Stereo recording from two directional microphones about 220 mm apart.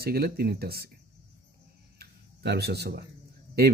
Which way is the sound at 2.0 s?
45° right (ahead or behind).